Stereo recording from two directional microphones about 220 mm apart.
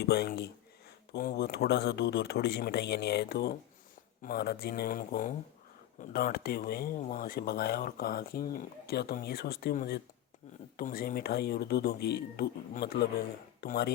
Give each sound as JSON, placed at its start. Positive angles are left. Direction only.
{"t": 0.0, "sound": "speech", "side_deg": 45}